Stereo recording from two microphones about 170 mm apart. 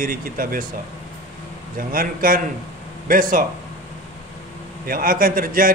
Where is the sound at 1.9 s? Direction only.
55° right (ahead or behind).